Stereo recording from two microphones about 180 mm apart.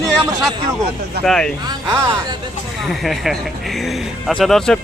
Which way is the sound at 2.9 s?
Centre (ahead or behind).